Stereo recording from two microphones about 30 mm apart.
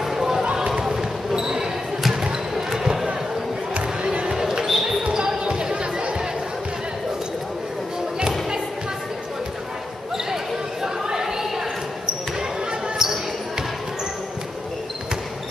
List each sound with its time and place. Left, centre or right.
0.0 s run: centre
0.4 s run: right
0.7 s basketball bounce: centre
3.7 s music: right
4.4 s basketball bounce: centre
5.1 s basketball bounce: right
10.1 s basketball bounce: centre
13.0 s basketball bounce: centre